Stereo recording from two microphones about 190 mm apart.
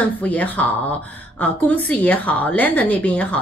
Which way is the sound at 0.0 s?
10° left (ahead or behind).